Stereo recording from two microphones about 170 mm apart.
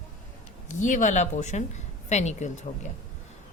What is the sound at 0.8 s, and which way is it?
Speech, 45° left (ahead or behind).